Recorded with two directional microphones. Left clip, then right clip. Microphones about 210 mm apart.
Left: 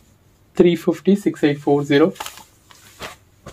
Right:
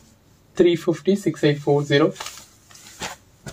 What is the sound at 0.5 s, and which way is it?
Speech, 45° left (ahead or behind).